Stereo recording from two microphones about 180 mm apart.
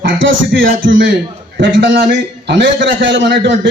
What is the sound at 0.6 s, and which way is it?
Speech, 50° right (ahead or behind).